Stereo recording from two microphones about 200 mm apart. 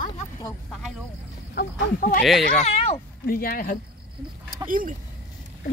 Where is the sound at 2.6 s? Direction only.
30° left (ahead or behind).